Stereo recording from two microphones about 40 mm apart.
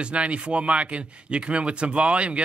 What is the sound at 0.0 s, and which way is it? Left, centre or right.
Speech, right.